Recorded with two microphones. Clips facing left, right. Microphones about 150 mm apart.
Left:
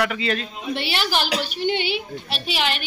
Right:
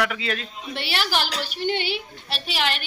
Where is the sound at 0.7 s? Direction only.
20° left (ahead or behind).